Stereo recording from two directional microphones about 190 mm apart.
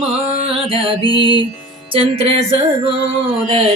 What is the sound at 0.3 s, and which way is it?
Music, 30° right (ahead or behind).